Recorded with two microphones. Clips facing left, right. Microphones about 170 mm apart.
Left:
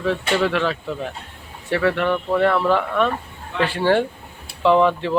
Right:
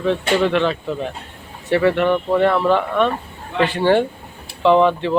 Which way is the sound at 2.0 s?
15° right (ahead or behind).